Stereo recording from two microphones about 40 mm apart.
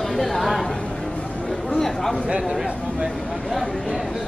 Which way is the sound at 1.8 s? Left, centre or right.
Centre.